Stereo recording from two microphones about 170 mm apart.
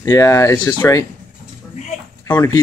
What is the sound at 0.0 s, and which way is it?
Speech, 20° left (ahead or behind).